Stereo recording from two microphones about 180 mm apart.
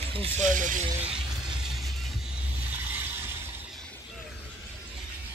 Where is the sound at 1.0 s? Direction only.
5° right (ahead or behind).